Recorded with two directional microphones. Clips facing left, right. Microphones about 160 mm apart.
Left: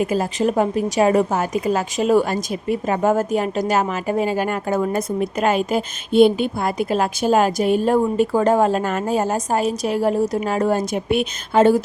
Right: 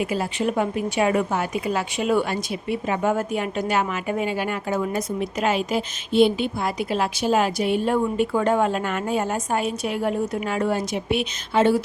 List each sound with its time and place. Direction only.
0.0 s a woman's voice: 40° left (ahead or behind)